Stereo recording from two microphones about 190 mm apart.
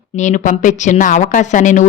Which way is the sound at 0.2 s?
40° left (ahead or behind).